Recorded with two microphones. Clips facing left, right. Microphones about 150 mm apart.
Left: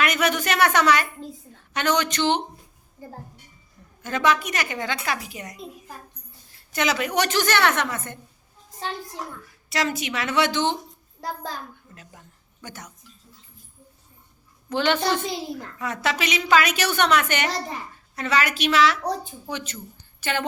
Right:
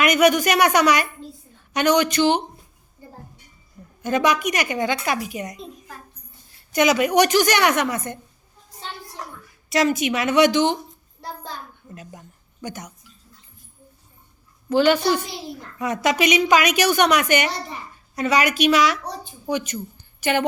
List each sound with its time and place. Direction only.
0.0 s a woman's voice: 15° right (ahead or behind)
4.0 s a woman's voice: 15° right (ahead or behind)
6.7 s a woman's voice: 15° right (ahead or behind)
9.6 s a woman's voice: 20° right (ahead or behind)
12.6 s a woman's voice: 15° right (ahead or behind)
14.7 s a woman's voice: 5° right (ahead or behind)